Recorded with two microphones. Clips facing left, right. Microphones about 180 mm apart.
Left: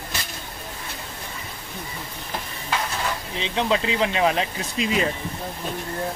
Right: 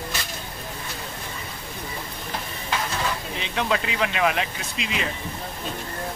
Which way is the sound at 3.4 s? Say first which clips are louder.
Left 4 dB; 25° left (ahead or behind).